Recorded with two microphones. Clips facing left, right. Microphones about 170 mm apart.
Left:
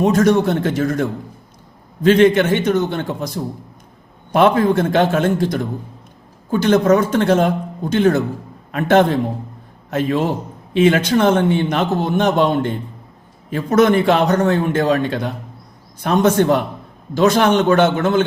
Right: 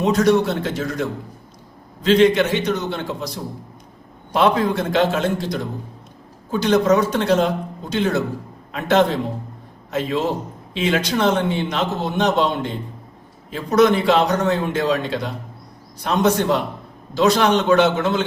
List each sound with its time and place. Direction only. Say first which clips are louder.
0.0 s a man's voice: left 2 dB; 50° left (ahead or behind)